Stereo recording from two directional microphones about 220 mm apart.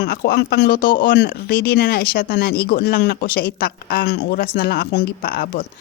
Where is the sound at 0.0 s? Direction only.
45° left (ahead or behind).